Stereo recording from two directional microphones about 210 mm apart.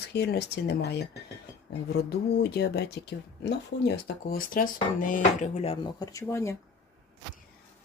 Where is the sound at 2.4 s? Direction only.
50° left (ahead or behind); by 6.0 s 25° left (ahead or behind).